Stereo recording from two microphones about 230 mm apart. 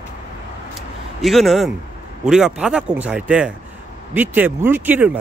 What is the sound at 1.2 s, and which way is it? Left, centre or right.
Speech, centre.